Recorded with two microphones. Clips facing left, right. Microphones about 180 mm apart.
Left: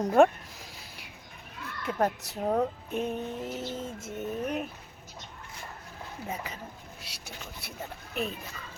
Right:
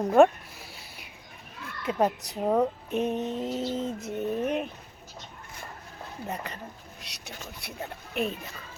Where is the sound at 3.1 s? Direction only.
25° right (ahead or behind).